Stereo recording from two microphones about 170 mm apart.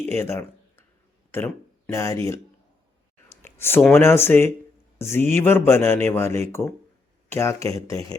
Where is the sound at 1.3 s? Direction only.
15° left (ahead or behind).